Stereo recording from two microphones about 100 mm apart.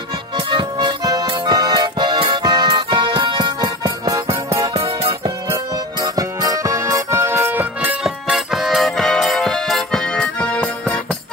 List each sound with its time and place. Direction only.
0.5 s music: 55° right (ahead or behind); by 4.4 s 35° right (ahead or behind)
4.7 s music: 70° right (ahead or behind)
6.1 s music: 35° right (ahead or behind)
8.0 s music: 5° right (ahead or behind); by 11.0 s 10° left (ahead or behind)